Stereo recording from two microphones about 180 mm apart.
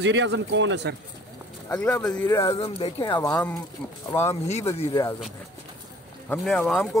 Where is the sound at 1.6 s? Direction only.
15° left (ahead or behind).